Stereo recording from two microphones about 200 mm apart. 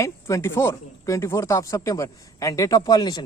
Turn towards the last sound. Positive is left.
turn(degrees=20)  # may be behind; listen again after turning